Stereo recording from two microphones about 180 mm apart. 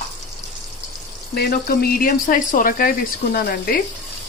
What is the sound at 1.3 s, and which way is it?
Speech, 60° left (ahead or behind).